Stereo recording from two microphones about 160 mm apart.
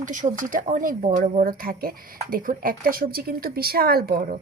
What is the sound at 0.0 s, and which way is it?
Speech, 55° right (ahead or behind).